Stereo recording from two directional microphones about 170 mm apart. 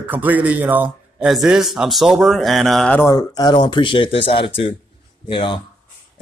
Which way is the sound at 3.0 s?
20° left (ahead or behind).